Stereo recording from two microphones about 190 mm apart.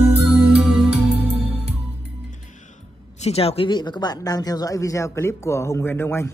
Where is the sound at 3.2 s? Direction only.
30° left (ahead or behind); by 6.3 s 15° left (ahead or behind).